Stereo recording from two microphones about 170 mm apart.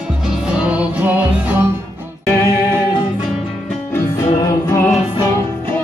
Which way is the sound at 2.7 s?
10° right (ahead or behind).